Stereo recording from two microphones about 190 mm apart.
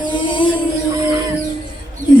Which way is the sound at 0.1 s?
25° left (ahead or behind).